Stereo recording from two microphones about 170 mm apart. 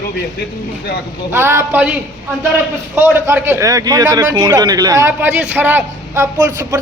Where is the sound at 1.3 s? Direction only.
15° right (ahead or behind).